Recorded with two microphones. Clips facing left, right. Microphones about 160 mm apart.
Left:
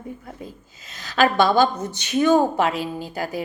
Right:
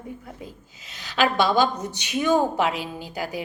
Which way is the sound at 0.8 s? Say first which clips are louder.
Left 3 dB; 45° left (ahead or behind).